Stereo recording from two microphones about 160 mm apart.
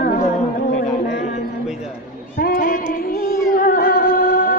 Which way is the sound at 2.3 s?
60° left (ahead or behind).